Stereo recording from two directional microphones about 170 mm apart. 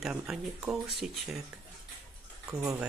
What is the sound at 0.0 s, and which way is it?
Speech, 5° right (ahead or behind).